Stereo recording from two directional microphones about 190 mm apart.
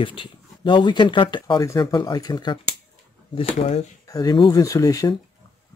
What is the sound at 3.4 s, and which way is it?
Speech, 35° left (ahead or behind).